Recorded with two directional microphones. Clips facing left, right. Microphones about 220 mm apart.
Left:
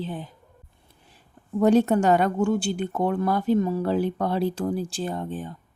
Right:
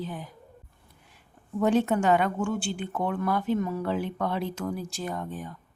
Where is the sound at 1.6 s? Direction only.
40° left (ahead or behind).